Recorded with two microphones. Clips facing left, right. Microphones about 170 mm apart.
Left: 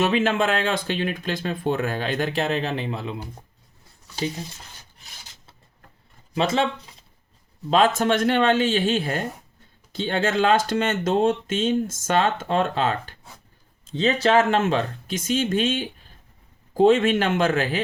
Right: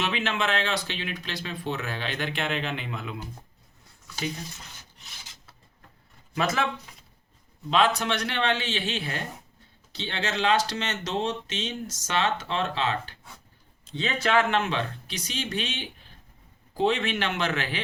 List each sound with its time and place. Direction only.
0.0 s speech: 45° left (ahead or behind); by 4.4 s 30° left (ahead or behind)
6.3 s speech: 25° left (ahead or behind)
7.7 s speech: 45° left (ahead or behind)
14.0 s speech: 35° left (ahead or behind)